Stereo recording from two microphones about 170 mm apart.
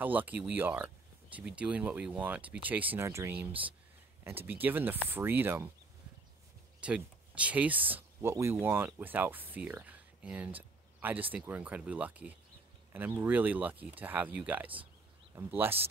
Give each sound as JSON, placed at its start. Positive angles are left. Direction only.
{"t": 0.0, "sound": "speech", "side_deg": -10}
{"t": 6.8, "sound": "speech", "side_deg": -5}